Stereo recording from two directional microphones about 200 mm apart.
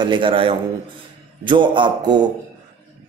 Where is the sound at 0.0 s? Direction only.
25° right (ahead or behind).